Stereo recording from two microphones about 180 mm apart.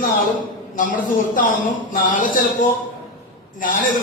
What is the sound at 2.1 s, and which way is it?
Speech, 50° left (ahead or behind).